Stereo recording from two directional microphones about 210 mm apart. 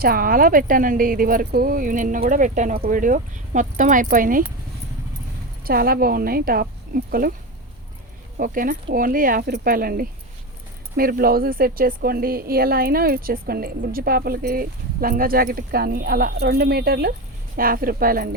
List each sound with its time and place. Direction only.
0.0 s speech: 45° right (ahead or behind)
5.6 s speech: 45° right (ahead or behind)
8.4 s speech: 40° right (ahead or behind)